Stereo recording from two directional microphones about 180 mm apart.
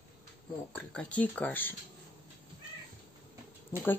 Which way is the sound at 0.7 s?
5° left (ahead or behind).